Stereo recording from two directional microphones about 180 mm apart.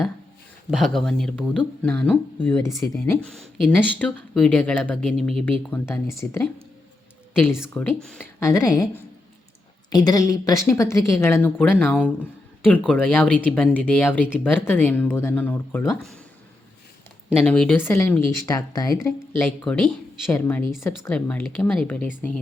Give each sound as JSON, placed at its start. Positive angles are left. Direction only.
{"t": 0.7, "sound": "speech", "side_deg": 0}
{"t": 5.9, "sound": "speech", "side_deg": 15}
{"t": 9.9, "sound": "speech", "side_deg": 20}
{"t": 17.4, "sound": "speech", "side_deg": 5}